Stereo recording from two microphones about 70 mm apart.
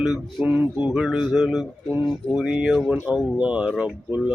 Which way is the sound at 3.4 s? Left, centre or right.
Centre.